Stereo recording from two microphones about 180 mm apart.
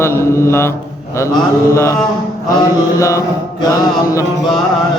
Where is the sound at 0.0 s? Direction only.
15° left (ahead or behind).